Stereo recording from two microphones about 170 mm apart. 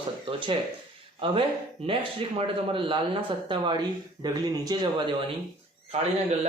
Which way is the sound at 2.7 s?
30° right (ahead or behind).